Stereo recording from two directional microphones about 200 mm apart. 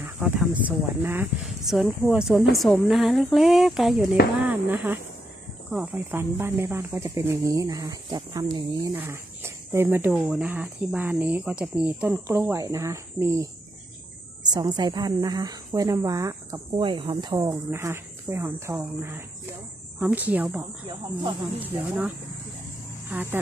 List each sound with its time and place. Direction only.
0.0 s a woman's voice: 10° right (ahead or behind)
21.8 s speech: 10° right (ahead or behind)